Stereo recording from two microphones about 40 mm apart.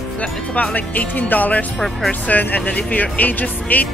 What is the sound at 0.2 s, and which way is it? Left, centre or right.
Speech, left.